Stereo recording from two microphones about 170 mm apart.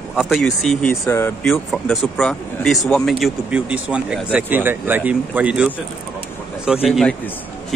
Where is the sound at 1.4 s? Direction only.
Centre (ahead or behind).